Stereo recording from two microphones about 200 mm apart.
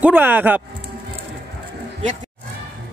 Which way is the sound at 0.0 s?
10° right (ahead or behind).